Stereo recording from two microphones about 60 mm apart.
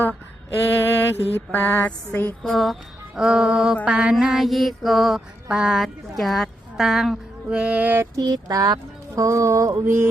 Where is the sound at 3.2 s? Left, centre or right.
Centre.